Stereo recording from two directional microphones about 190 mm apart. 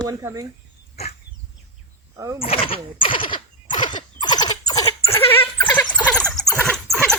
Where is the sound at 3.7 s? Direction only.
25° left (ahead or behind); by 6.2 s 5° left (ahead or behind).